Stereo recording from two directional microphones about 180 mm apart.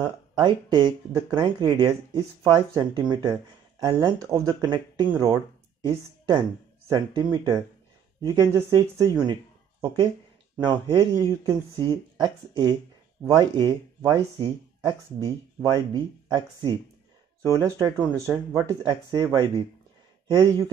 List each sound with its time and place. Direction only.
0.4 s speech: 25° right (ahead or behind)